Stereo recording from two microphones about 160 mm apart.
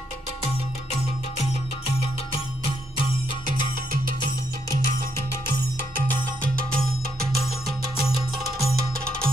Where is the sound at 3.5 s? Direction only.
60° right (ahead or behind).